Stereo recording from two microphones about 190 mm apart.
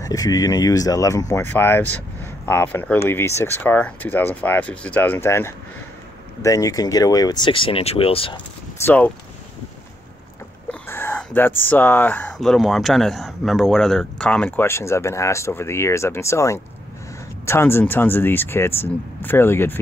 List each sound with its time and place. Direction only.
0.0 s speech: 20° left (ahead or behind)
8.8 s speech: 10° left (ahead or behind)
10.7 s speech: 10° left (ahead or behind)